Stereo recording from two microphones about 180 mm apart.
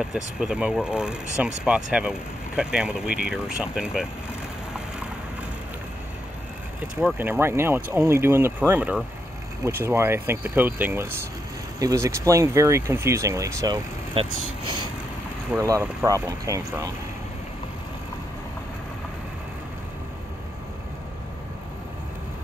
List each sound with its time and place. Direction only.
0.0 s speech: 5° right (ahead or behind)
7.0 s speech: 10° right (ahead or behind)
14.2 s speech: 30° right (ahead or behind)
15.5 s speech: 15° right (ahead or behind)